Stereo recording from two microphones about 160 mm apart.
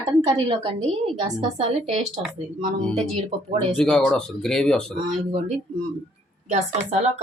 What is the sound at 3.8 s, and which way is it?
Speech, 5° left (ahead or behind).